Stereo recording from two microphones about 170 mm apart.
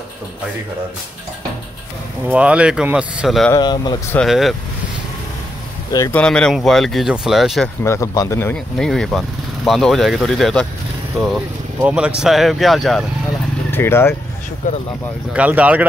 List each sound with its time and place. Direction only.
2.2 s speech: 5° right (ahead or behind)
3.5 s speech: 25° left (ahead or behind)
4.1 s speech: centre (ahead or behind)
6.1 s speech: 5° left (ahead or behind)
7.8 s speech: 15° left (ahead or behind)
8.7 s speech: 5° left (ahead or behind)
13.7 s speech: 15° left (ahead or behind)
15.3 s speech: 10° right (ahead or behind)